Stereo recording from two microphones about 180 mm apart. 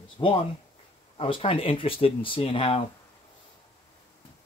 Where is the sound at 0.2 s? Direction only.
25° left (ahead or behind).